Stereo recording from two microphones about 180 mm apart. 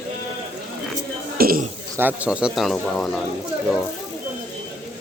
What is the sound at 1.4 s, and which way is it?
Speech, 55° right (ahead or behind).